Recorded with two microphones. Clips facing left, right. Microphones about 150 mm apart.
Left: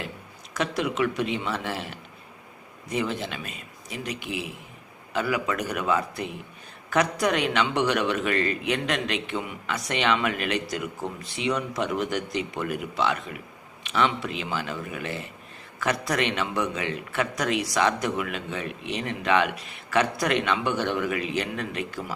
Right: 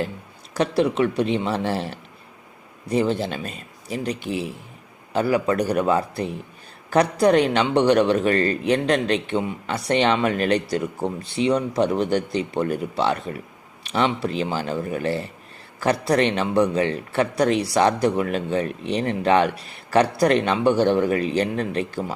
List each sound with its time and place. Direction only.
0.5 s a man's voice: 30° right (ahead or behind)